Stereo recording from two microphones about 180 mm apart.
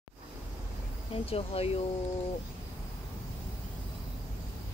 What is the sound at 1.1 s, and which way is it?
Speech, 35° left (ahead or behind).